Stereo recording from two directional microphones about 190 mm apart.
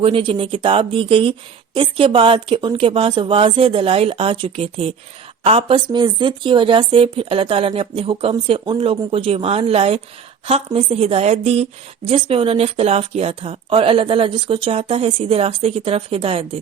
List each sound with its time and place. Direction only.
0.0 s a woman's voice: 30° right (ahead or behind)